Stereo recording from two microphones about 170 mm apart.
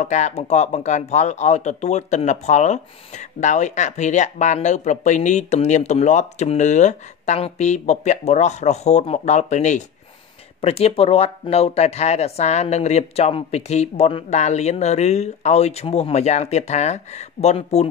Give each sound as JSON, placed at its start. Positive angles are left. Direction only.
{"t": 0.0, "sound": "speech", "side_deg": 45}